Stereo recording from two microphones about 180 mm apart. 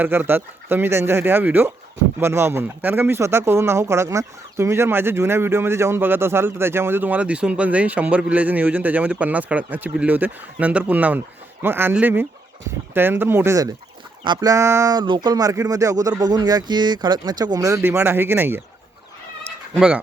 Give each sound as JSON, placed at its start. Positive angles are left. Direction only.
{"t": 0.0, "sound": "speech", "side_deg": -10}
{"t": 19.7, "sound": "speech", "side_deg": -5}